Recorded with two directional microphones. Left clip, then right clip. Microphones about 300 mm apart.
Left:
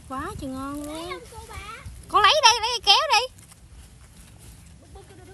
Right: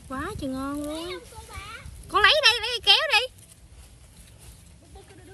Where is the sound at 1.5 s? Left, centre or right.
Left.